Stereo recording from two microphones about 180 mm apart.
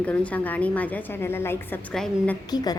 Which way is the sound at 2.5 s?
20° left (ahead or behind).